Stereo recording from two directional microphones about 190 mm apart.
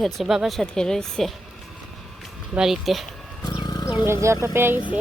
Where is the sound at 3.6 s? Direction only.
20° left (ahead or behind).